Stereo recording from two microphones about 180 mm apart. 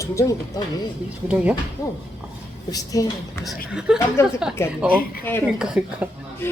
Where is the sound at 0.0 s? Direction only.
15° left (ahead or behind).